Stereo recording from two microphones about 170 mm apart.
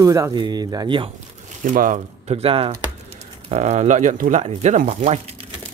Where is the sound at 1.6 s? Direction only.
50° right (ahead or behind).